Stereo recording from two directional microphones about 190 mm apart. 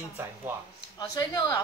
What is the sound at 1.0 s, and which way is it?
Speech, 20° left (ahead or behind).